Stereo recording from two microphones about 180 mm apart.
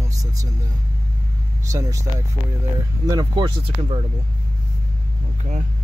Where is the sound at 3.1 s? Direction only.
25° right (ahead or behind).